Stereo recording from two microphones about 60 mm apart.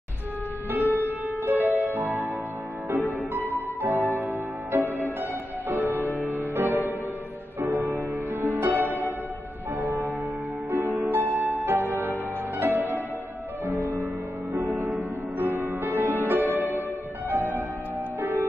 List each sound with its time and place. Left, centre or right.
0.7 s music: right
3.9 s music: right
7.9 s music: right
8.7 s music: left
11.1 s music: right
15.0 s music: right
16.2 s music: right
16.4 s music: left
17.3 s music: right